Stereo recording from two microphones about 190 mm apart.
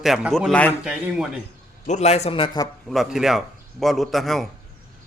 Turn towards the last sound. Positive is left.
turn(degrees=0)  # may be behind; listen again after turning